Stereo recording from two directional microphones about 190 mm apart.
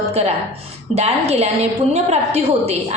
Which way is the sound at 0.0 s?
35° right (ahead or behind).